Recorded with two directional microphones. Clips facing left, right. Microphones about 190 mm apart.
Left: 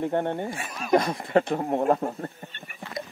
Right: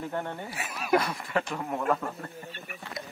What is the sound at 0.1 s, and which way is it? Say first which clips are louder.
Speech: left 8 dB; 30° left (ahead or behind).